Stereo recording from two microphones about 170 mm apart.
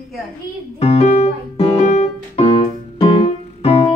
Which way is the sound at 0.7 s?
40° left (ahead or behind).